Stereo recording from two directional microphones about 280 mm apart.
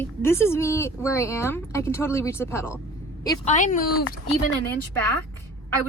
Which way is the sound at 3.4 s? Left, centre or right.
Left.